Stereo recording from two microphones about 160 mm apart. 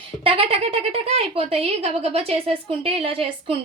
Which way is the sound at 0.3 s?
35° right (ahead or behind).